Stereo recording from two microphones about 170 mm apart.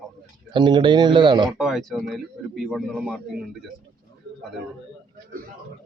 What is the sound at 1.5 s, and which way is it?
Speech, centre (ahead or behind).